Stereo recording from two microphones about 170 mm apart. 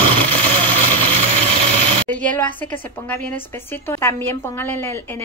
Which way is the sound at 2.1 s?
10° left (ahead or behind).